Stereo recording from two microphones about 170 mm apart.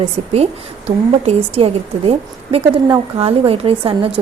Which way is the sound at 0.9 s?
40° right (ahead or behind).